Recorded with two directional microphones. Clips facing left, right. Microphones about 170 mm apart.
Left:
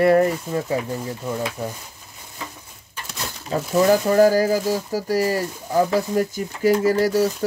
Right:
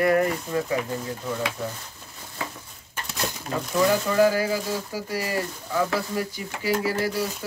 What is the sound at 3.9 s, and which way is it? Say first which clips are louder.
Speech: left 6 dB; 40° left (ahead or behind).